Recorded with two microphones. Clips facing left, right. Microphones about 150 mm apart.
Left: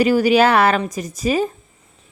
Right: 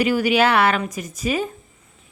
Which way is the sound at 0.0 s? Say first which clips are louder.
Left 4 dB; 40° left (ahead or behind).